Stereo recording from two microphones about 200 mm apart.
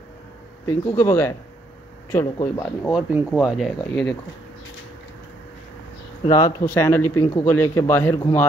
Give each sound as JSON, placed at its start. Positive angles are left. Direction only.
{"t": 0.9, "sound": "speech", "side_deg": 10}
{"t": 2.6, "sound": "speech", "side_deg": 0}
{"t": 6.2, "sound": "speech", "side_deg": 15}